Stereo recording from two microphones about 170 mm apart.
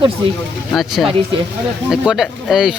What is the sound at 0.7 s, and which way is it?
Speech, centre (ahead or behind).